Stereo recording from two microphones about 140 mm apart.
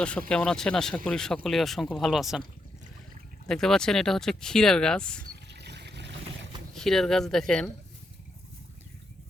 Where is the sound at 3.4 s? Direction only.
5° left (ahead or behind).